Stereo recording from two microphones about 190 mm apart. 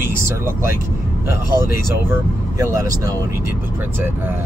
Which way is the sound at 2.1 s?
15° right (ahead or behind).